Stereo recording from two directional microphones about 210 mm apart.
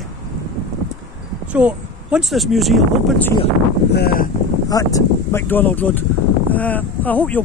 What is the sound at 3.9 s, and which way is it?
Speech, 45° left (ahead or behind).